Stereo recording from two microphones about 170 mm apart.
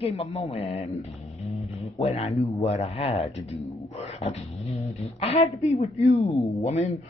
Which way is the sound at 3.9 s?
40° left (ahead or behind).